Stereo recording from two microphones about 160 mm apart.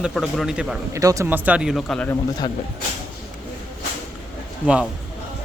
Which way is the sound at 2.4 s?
25° left (ahead or behind).